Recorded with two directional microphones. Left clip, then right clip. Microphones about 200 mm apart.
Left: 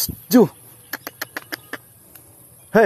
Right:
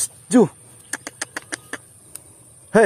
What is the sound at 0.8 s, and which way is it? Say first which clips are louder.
Duck: even; 5° left (ahead or behind).